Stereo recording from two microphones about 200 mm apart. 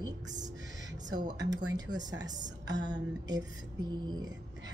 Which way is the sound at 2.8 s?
20° right (ahead or behind).